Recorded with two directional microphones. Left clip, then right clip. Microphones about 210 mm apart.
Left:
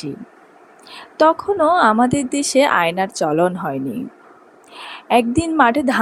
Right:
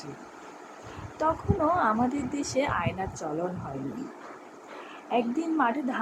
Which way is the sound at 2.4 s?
45° left (ahead or behind).